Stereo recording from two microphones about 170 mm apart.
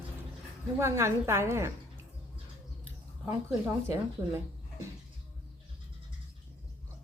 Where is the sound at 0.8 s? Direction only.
15° right (ahead or behind).